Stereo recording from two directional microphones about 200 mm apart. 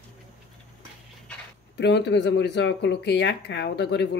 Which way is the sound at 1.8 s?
60° left (ahead or behind).